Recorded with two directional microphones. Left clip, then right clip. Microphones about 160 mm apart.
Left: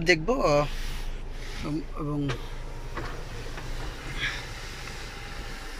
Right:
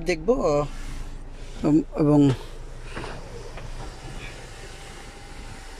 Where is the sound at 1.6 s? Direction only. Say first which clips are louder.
Right 13 dB; 80° right.